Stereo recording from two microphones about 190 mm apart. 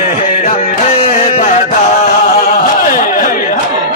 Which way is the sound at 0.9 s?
30° left (ahead or behind).